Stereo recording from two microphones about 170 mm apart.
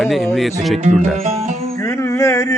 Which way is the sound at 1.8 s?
20° left (ahead or behind).